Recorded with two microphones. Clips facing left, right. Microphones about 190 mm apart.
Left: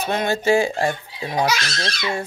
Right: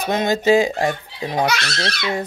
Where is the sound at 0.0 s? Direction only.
15° right (ahead or behind).